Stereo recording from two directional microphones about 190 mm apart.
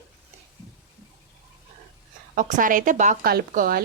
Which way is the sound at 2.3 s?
40° right (ahead or behind).